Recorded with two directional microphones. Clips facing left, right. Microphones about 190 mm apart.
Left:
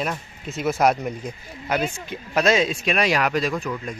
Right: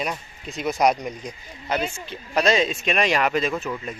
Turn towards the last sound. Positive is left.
turn(degrees=-5)  # may be behind; listen again after turning